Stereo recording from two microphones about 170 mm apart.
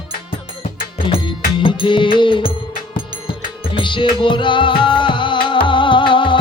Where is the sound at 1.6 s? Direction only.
30° left (ahead or behind).